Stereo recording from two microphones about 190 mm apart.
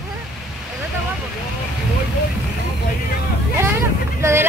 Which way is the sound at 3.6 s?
15° right (ahead or behind).